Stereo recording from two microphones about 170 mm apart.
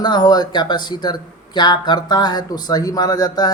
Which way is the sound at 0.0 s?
25° left (ahead or behind).